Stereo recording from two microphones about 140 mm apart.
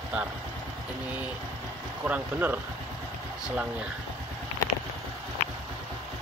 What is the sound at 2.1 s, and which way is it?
Speech, 15° right (ahead or behind).